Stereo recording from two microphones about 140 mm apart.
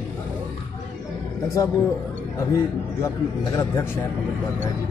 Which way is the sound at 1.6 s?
25° left (ahead or behind).